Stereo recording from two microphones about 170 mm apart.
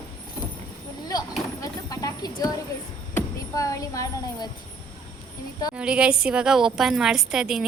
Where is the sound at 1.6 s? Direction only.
20° left (ahead or behind).